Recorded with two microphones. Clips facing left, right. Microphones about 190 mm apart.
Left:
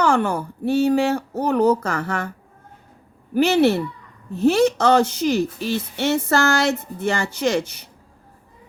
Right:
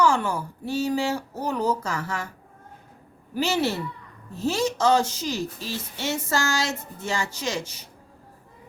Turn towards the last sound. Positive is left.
turn(degrees=60)  # may be behind; listen again after turning